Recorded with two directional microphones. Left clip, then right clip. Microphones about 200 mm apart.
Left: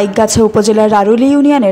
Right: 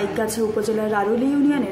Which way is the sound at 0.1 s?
45° left (ahead or behind).